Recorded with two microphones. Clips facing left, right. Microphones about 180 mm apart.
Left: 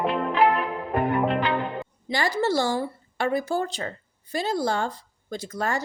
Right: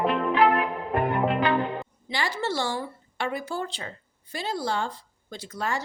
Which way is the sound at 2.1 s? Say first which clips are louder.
Left 5 dB; 45° left (ahead or behind).